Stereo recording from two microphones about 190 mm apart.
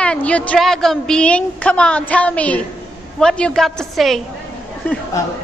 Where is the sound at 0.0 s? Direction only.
5° left (ahead or behind).